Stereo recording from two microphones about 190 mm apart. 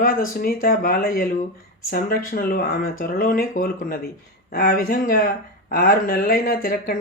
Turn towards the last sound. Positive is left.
turn(degrees=50)  # may be behind; listen again after turning